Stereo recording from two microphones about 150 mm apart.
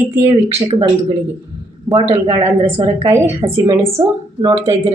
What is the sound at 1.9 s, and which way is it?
Speech, 30° right (ahead or behind).